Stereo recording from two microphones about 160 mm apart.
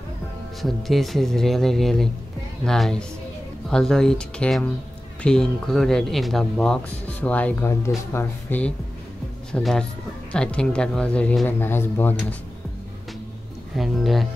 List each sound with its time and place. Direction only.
0.6 s speech: centre (ahead or behind)
13.7 s speech: centre (ahead or behind)